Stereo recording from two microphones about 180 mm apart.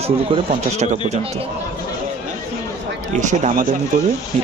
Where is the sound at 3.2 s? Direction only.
45° right (ahead or behind).